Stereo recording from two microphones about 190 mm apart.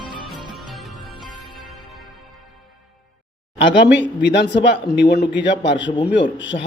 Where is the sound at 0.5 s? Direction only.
Centre (ahead or behind).